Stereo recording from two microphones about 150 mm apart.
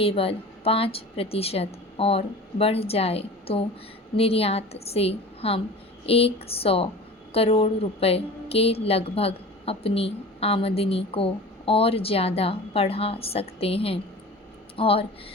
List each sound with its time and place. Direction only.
0.0 s a woman's voice: 40° left (ahead or behind)